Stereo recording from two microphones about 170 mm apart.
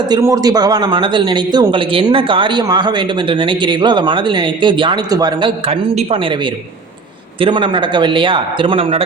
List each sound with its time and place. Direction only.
0.1 s speech: 20° right (ahead or behind)